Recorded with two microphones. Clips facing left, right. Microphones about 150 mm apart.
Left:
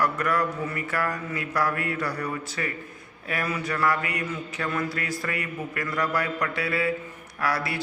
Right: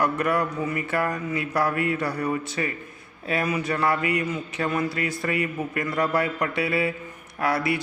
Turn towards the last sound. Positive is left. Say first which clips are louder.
# right 4 dB
turn(degrees=-20)  # may be behind; listen again after turning